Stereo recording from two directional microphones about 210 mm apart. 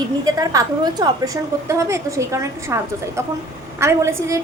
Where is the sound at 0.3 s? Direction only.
15° right (ahead or behind).